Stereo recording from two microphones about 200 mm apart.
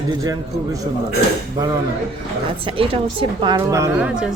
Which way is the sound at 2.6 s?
25° right (ahead or behind).